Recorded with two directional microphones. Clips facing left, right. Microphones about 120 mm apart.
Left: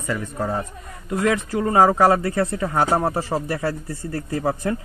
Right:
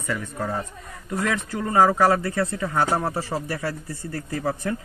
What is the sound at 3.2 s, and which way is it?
Speech, 25° left (ahead or behind).